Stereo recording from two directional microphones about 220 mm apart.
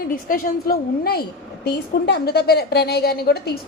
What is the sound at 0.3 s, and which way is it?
A woman's voice, 40° left (ahead or behind).